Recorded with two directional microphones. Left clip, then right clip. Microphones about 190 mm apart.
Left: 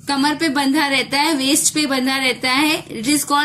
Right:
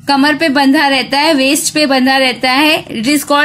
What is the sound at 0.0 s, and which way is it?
A woman's voice, 40° right (ahead or behind).